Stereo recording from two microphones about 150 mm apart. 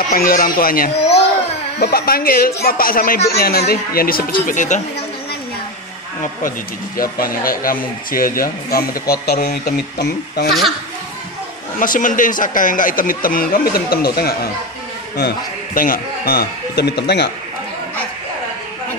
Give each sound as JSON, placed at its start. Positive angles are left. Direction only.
{"t": 0.1, "sound": "speech", "side_deg": 70}
{"t": 3.3, "sound": "speech", "side_deg": 90}
{"t": 7.0, "sound": "speech", "side_deg": 70}
{"t": 11.8, "sound": "speech", "side_deg": 60}
{"t": 15.1, "sound": "a man's voice", "side_deg": 80}